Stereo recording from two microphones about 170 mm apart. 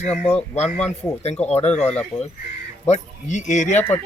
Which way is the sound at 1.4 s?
40° left (ahead or behind).